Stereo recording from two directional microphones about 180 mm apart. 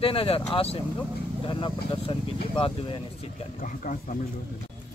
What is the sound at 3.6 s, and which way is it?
Speech, 45° left (ahead or behind).